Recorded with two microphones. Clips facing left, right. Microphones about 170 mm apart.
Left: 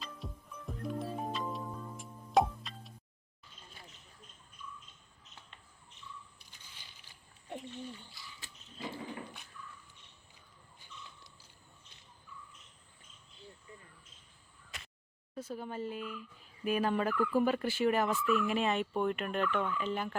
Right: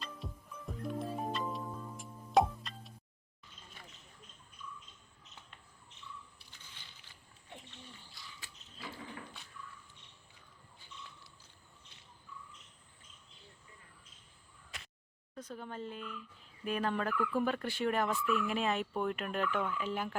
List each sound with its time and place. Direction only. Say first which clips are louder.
0.0 s music: even; centre (ahead or behind)
8.4 s a sound: left 7 dB; 25° left (ahead or behind)
15.4 s speech: left 4 dB; 5° left (ahead or behind)
16.6 s fowl: left 3 dB; 5° left (ahead or behind)